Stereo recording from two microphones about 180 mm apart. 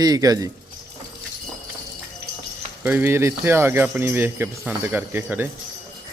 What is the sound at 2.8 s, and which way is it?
Speech, 10° right (ahead or behind).